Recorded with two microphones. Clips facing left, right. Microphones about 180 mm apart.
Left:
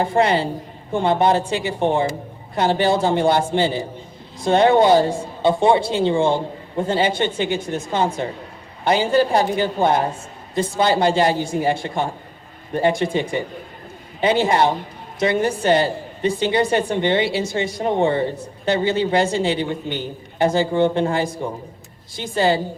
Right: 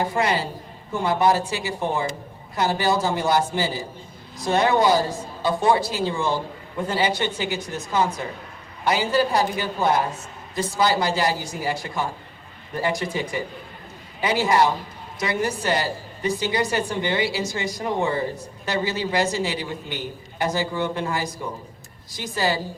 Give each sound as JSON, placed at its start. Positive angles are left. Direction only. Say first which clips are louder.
{"t": 0.0, "sound": "a woman's voice", "louder": "left 5 dB", "side_deg": 30}